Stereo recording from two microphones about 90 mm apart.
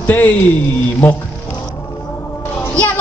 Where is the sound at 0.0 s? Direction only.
20° left (ahead or behind).